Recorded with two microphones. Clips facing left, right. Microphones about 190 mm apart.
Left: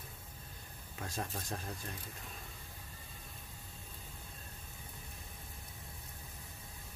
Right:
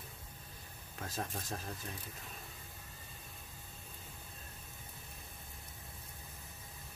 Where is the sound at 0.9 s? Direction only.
Centre (ahead or behind).